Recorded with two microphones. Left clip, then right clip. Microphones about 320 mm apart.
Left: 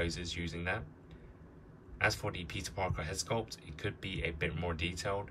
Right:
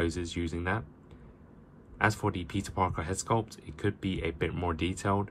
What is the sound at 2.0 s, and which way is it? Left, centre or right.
Speech, centre.